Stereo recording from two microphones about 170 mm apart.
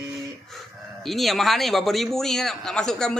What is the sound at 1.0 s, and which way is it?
A man's voice, centre (ahead or behind).